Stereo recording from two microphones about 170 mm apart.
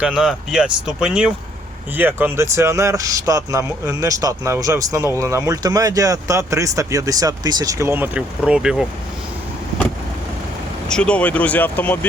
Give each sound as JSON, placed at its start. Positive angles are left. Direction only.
{"t": 0.0, "sound": "speech", "side_deg": -5}
{"t": 10.8, "sound": "speech", "side_deg": 5}